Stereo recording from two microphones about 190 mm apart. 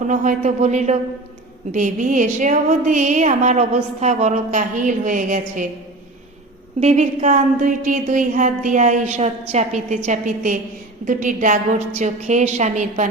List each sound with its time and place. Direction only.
0.1 s music: 40° right (ahead or behind)
6.7 s music: 35° right (ahead or behind)
11.0 s a woman's voice: 45° right (ahead or behind)
11.9 s music: 40° right (ahead or behind)